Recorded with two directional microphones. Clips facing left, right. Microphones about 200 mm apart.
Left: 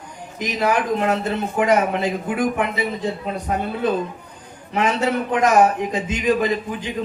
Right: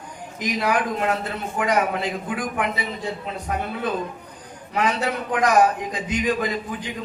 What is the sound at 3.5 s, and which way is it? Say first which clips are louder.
Speech: left 3 dB; 30° left (ahead or behind).